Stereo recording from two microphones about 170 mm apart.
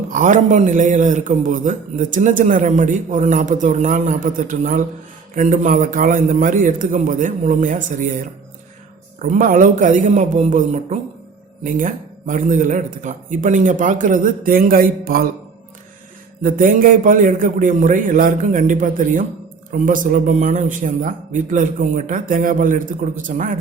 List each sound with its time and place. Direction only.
0.1 s a man's voice: 50° right (ahead or behind)
16.4 s a man's voice: 55° right (ahead or behind)